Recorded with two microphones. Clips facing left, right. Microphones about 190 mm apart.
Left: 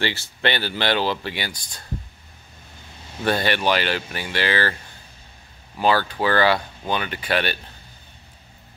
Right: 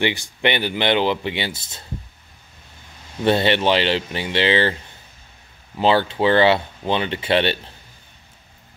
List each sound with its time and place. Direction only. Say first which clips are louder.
0.0 s speech: right 3 dB; 15° right (ahead or behind)
3.3 s speech: right 4 dB; 25° right (ahead or behind)
5.8 s speech: right 3 dB; 25° right (ahead or behind)